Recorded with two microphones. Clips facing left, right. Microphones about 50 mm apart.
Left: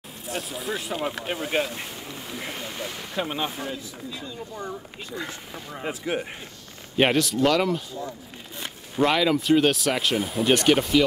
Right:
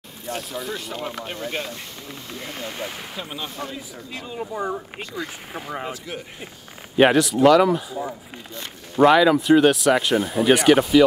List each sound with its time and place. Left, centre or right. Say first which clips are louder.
0.3 s speech: right 1 dB; centre
2.6 s speech: right 2 dB; centre
3.2 s speech: left 5 dB; left
4.1 s speech: right 7 dB; right
5.5 s speech: right 6 dB; right
5.9 s speech: left 4 dB; left
7.0 s speech: right 5 dB; centre